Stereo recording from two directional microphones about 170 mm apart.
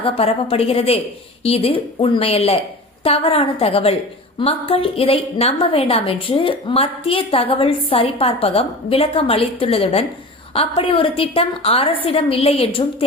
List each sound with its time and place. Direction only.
0.0 s a woman's voice: 35° left (ahead or behind)